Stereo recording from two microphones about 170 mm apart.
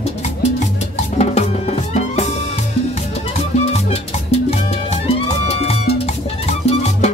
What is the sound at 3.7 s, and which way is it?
Music, 35° left (ahead or behind).